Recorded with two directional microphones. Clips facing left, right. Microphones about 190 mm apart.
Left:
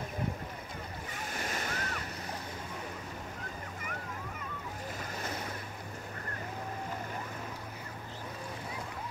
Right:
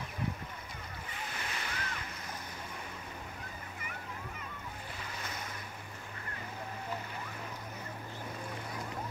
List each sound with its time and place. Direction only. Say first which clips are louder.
1.3 s waves: left 6 dB; 45° left (ahead or behind)